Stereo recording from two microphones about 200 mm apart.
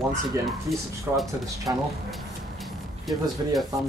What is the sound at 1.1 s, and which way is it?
Speech, 10° right (ahead or behind).